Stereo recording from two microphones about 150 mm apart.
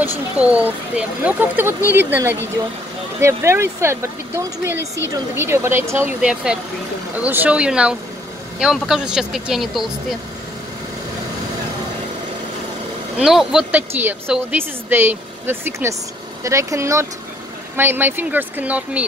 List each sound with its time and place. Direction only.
0.4 s speech: 10° right (ahead or behind)
13.2 s speech: centre (ahead or behind)